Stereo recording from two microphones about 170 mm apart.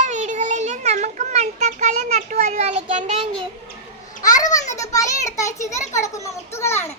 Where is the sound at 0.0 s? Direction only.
45° right (ahead or behind).